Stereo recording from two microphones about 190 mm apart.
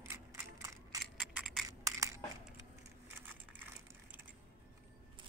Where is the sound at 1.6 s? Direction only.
15° right (ahead or behind).